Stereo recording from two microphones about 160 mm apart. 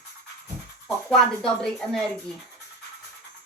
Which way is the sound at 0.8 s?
5° left (ahead or behind).